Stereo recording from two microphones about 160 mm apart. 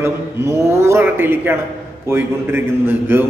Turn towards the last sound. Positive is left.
turn(degrees=-15)  # may be behind; listen again after turning